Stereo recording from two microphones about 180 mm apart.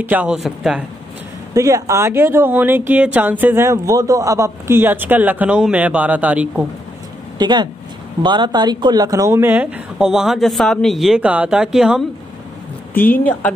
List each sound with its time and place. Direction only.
0.0 s speech: 10° right (ahead or behind)
1.5 s speech: 20° right (ahead or behind)
7.3 s speech: 25° right (ahead or behind); by 12.0 s 5° right (ahead or behind)
12.9 s speech: 10° left (ahead or behind)